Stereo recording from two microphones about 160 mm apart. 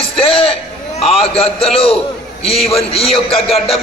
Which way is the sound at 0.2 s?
35° left (ahead or behind).